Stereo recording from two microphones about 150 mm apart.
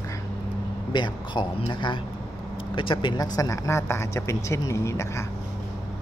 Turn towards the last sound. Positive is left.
turn(degrees=20)  # may be behind; listen again after turning